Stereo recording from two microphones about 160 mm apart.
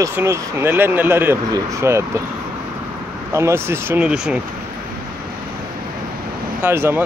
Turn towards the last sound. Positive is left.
turn(degrees=-15)  # may be behind; listen again after turning